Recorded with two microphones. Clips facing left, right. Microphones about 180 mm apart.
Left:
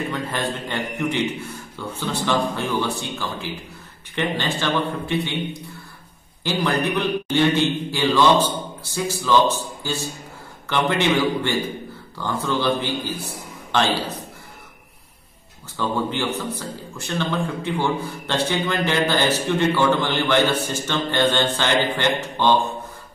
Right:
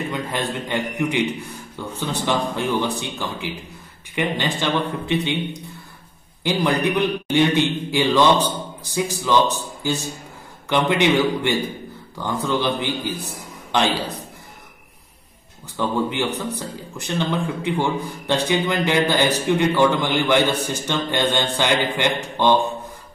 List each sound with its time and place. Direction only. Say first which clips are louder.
0.1 s a man's voice: right 1 dB; 15° right (ahead or behind)
15.8 s a man's voice: right 2 dB; 15° right (ahead or behind)